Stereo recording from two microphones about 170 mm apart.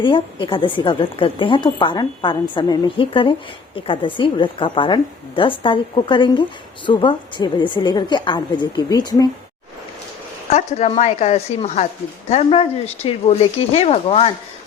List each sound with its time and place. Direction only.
0.0 s a woman's voice: 30° left (ahead or behind)
10.5 s speech: 40° left (ahead or behind)